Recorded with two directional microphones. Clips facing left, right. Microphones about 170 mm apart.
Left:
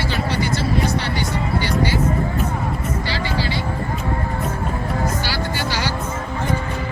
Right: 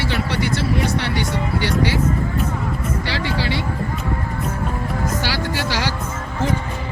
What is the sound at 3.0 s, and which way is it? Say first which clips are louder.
Speech: right 1 dB; 70° right (ahead or behind).